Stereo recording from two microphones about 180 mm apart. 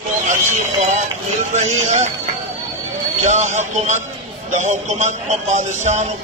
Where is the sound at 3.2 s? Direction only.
40° right (ahead or behind).